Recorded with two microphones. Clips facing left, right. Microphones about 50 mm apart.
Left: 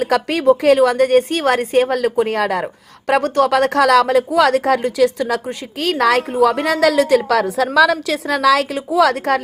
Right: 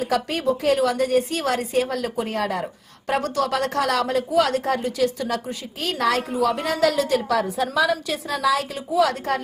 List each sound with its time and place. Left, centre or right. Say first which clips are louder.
0.0 s a woman's voice: left 7 dB; left